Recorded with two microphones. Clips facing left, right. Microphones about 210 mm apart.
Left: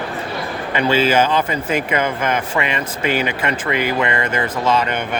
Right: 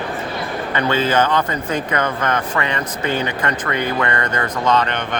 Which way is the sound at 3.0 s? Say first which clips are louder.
Left 2 dB; 90° left.